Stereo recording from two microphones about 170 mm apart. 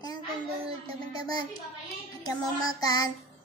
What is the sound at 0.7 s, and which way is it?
Music, 35° right (ahead or behind).